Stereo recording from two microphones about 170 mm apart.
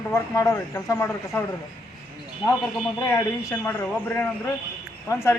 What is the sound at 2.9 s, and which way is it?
A man's voice, 15° left (ahead or behind).